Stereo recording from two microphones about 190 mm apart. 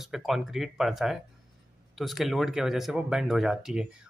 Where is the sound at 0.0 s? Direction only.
Centre (ahead or behind).